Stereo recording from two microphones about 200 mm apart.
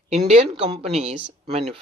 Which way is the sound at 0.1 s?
35° right (ahead or behind).